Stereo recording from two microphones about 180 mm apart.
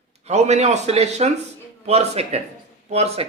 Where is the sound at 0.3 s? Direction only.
40° right (ahead or behind).